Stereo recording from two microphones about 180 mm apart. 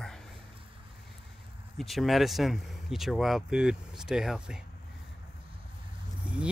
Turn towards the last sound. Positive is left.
turn(degrees=-5)  # may be behind; listen again after turning